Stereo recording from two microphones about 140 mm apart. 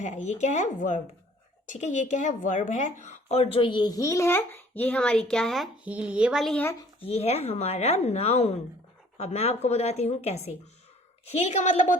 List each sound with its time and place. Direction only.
0.0 s speech: 60° left (ahead or behind); by 6.6 s centre (ahead or behind)
7.0 s speech: 45° left (ahead or behind); by 11.9 s 60° left (ahead or behind)